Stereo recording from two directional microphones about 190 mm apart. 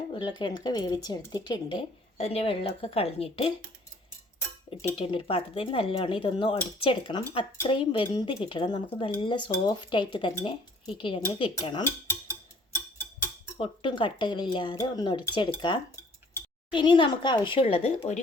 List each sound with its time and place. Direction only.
0.1 s speech: 25° left (ahead or behind)
4.8 s speech: 30° left (ahead or behind)
13.6 s speech: 25° left (ahead or behind)